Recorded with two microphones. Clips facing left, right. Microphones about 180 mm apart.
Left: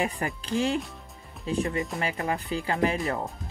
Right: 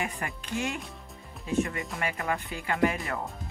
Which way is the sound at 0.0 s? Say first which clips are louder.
Left 5 dB; 35° left (ahead or behind).